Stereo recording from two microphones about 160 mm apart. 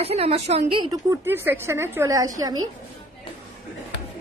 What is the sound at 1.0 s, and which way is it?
A woman's voice, 15° right (ahead or behind).